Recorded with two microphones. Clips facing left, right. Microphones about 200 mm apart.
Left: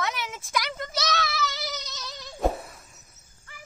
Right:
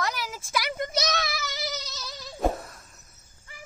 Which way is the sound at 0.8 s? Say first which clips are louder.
Right 1 dB; 20° right (ahead or behind).